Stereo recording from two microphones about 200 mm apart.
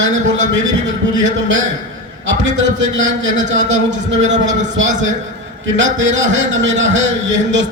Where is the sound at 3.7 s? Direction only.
65° right (ahead or behind).